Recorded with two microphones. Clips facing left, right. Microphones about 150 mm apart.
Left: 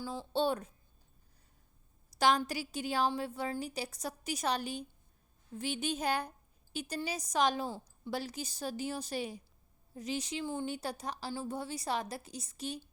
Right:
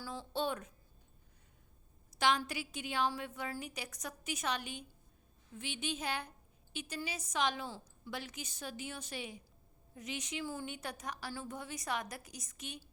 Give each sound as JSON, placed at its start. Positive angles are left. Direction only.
{"t": 0.0, "sound": "a woman's voice", "side_deg": 25}
{"t": 2.1, "sound": "a woman's voice", "side_deg": 40}
{"t": 10.4, "sound": "a woman's voice", "side_deg": 25}